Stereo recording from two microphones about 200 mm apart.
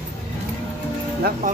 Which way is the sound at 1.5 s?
40° right (ahead or behind).